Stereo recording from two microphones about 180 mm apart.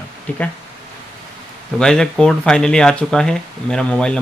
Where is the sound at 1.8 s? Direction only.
5° left (ahead or behind).